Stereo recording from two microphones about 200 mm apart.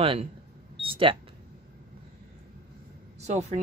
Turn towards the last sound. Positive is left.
turn(degrees=-35)  # may be behind; listen again after turning